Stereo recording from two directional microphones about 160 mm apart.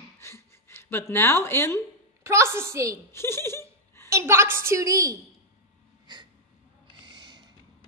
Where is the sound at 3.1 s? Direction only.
15° left (ahead or behind).